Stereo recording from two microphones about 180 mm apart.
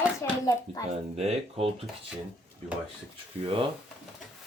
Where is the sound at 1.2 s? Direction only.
35° right (ahead or behind).